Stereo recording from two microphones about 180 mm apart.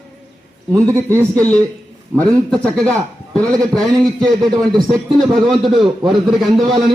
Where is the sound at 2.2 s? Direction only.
5° left (ahead or behind).